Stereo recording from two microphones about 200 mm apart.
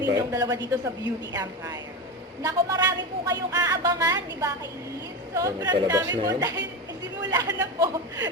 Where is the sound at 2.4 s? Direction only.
15° right (ahead or behind).